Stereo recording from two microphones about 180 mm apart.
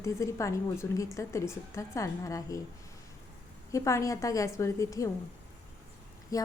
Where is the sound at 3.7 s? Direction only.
15° left (ahead or behind).